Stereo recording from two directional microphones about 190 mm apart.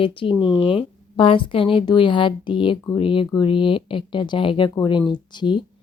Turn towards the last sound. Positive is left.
turn(degrees=25)  # may be behind; listen again after turning